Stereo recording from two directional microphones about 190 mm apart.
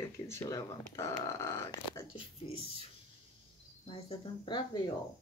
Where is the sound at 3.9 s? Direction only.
25° left (ahead or behind).